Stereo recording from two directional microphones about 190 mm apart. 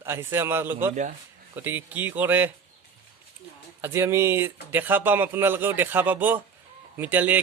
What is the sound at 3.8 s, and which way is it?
Speech, 15° right (ahead or behind).